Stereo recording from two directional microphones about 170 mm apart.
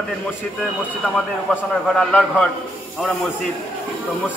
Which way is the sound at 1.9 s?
5° left (ahead or behind).